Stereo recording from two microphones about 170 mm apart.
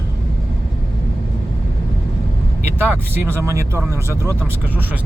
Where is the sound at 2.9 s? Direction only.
15° right (ahead or behind).